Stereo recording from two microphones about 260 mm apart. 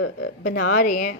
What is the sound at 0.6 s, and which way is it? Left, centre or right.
Speech, left.